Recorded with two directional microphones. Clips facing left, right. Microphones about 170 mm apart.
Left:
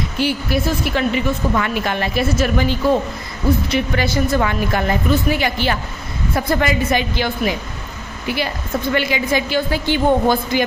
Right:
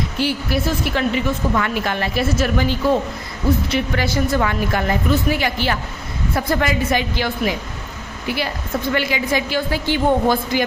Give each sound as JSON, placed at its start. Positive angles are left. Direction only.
{"t": 0.2, "sound": "a woman's voice", "side_deg": 15}
{"t": 8.9, "sound": "a woman's voice", "side_deg": 20}